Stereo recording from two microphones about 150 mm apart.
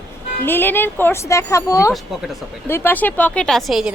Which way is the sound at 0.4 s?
15° left (ahead or behind).